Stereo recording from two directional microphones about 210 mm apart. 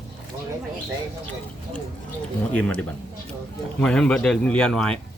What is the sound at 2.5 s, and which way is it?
Speech, 5° left (ahead or behind).